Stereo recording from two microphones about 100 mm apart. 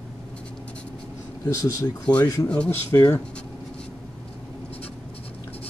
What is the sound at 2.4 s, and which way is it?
Speech, 10° left (ahead or behind).